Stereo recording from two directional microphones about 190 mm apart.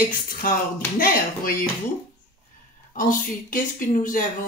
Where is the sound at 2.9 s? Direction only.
45° left (ahead or behind).